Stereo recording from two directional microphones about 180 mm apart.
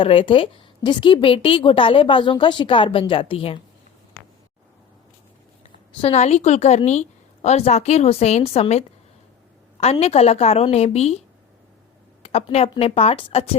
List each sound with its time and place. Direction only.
0.0 s a woman's voice: 30° left (ahead or behind)
6.0 s a woman's voice: 35° left (ahead or behind)
12.2 s a woman's voice: 35° left (ahead or behind)